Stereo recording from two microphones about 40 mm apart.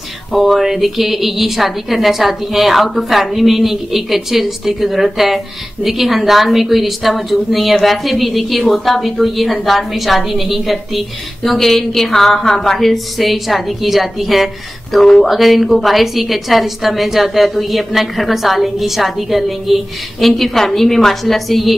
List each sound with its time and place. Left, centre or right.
0.3 s a woman's voice: centre